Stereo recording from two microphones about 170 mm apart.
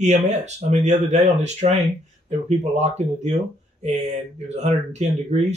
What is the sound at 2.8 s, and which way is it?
Speech, 40° right (ahead or behind).